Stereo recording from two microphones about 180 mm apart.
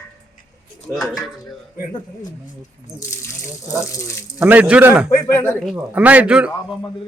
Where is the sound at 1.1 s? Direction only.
Centre (ahead or behind).